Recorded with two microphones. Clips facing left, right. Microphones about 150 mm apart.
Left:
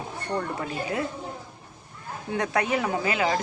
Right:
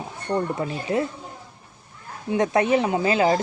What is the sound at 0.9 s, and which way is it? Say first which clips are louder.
Speech: right 7 dB; 25° right (ahead or behind).